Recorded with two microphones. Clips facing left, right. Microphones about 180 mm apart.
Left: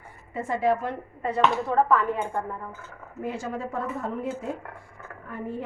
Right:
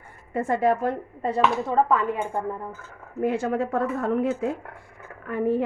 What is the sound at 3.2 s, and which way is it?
A woman's voice, 60° right (ahead or behind).